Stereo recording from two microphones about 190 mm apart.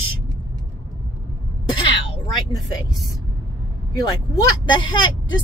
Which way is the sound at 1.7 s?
20° left (ahead or behind).